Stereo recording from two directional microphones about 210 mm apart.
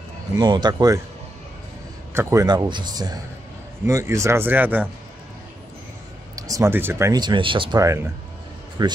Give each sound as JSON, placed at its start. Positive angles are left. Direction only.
{"t": 0.4, "sound": "speech", "side_deg": -20}
{"t": 2.1, "sound": "speech", "side_deg": -15}
{"t": 6.3, "sound": "speech", "side_deg": -15}